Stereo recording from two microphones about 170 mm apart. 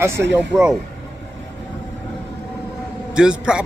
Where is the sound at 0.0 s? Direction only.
15° right (ahead or behind).